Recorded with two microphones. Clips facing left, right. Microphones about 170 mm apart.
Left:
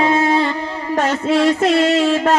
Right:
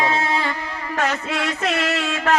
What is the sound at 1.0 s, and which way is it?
Music, 25° left (ahead or behind).